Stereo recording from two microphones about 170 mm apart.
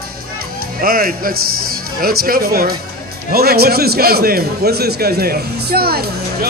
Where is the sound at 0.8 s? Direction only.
60° right (ahead or behind).